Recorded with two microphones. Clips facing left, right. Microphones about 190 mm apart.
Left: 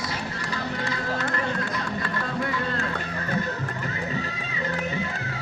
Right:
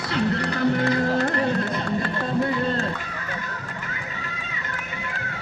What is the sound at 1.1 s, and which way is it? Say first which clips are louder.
Music: right 6 dB; 35° right (ahead or behind).